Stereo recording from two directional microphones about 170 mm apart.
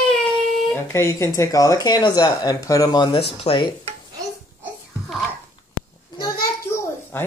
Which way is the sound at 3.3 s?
30° left (ahead or behind).